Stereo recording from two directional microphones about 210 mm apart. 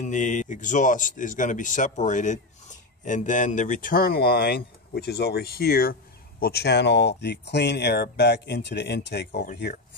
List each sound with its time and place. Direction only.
0.0 s speech: 35° left (ahead or behind); by 9.5 s 55° left (ahead or behind)